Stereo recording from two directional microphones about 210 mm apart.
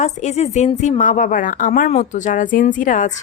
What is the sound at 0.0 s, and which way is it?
A woman's voice, 35° left (ahead or behind).